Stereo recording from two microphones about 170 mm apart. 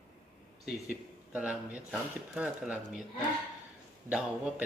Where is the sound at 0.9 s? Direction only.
10° right (ahead or behind).